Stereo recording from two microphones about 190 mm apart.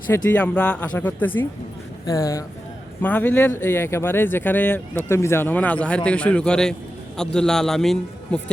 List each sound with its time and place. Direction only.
0.1 s a man's voice: 5° left (ahead or behind)